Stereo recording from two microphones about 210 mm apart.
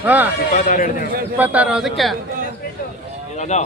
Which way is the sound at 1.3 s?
5° right (ahead or behind).